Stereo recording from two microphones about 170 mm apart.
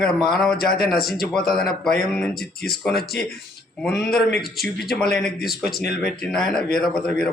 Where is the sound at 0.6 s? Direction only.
65° left (ahead or behind).